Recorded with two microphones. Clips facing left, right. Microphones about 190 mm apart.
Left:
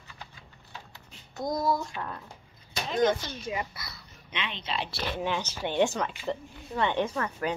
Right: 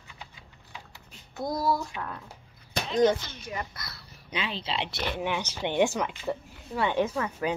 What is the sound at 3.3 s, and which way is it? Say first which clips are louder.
Speech: left 3 dB; 15° left (ahead or behind).